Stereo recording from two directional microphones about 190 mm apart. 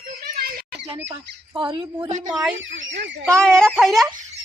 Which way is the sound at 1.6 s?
25° right (ahead or behind).